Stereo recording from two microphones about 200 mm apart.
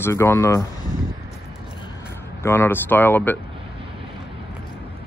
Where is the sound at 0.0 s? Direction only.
15° left (ahead or behind).